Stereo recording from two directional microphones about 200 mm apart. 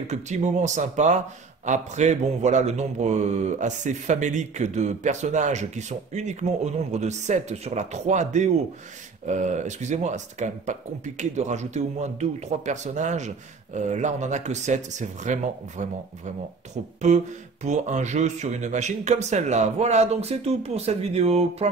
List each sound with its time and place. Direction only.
0.1 s speech: 35° right (ahead or behind)
17.1 s speech: 35° right (ahead or behind)